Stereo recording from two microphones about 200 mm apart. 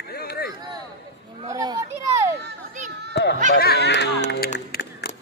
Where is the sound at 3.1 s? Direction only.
60° left (ahead or behind).